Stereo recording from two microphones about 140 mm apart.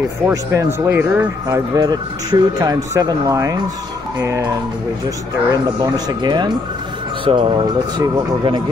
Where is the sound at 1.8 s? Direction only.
30° right (ahead or behind).